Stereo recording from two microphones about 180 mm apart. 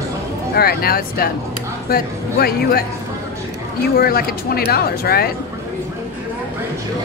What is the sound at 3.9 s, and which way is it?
Speech, 55° left (ahead or behind).